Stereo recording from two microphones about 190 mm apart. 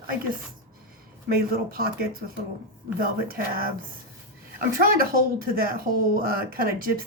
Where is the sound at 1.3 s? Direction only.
50° right (ahead or behind).